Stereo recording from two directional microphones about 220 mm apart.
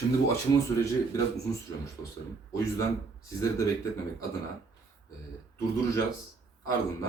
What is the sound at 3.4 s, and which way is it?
Speech, 15° left (ahead or behind).